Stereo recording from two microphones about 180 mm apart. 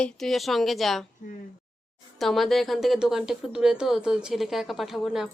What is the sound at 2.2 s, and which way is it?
A woman's voice, centre (ahead or behind).